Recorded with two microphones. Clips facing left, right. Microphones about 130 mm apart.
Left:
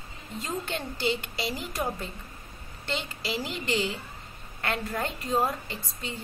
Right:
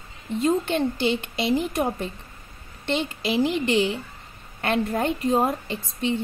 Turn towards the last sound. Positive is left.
turn(degrees=-20)  # may be behind; listen again after turning